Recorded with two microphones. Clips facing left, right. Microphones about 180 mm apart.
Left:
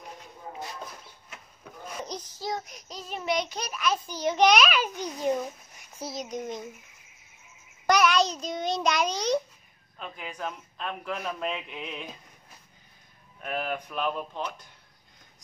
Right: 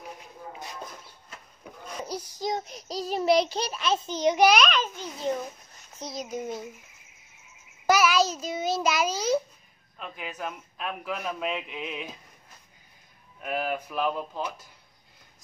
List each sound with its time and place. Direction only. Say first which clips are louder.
2.0 s a sound: right 4 dB; 10° right (ahead or behind)
2.6 s child singing: right 9 dB; 35° right (ahead or behind)
4.4 s a child's voice: left 1 dB; centre (ahead or behind)
7.8 s a child's voice: right 1 dB; 5° right (ahead or behind)
13.4 s speech: right 2 dB; 5° right (ahead or behind)